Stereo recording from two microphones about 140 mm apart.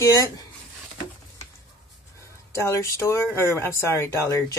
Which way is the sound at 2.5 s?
20° left (ahead or behind).